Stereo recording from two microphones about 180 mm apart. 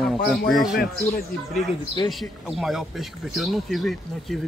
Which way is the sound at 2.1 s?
Centre (ahead or behind).